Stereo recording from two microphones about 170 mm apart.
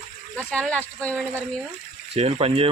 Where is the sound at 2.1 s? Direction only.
35° right (ahead or behind).